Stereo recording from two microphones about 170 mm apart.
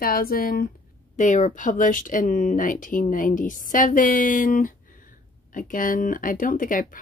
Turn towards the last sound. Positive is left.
turn(degrees=55)  # may be behind; listen again after turning